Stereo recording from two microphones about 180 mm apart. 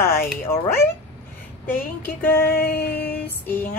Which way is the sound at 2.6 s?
65° left (ahead or behind).